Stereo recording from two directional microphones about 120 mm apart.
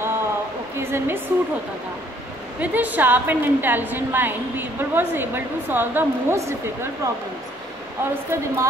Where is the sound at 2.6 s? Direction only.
15° right (ahead or behind).